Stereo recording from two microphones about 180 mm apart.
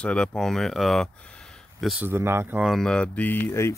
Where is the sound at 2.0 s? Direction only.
15° right (ahead or behind).